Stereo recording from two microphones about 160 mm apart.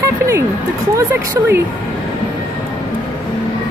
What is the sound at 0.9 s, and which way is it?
Speech, 15° right (ahead or behind).